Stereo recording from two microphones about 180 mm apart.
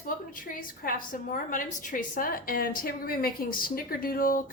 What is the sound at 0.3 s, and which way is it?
Speech, 50° left (ahead or behind).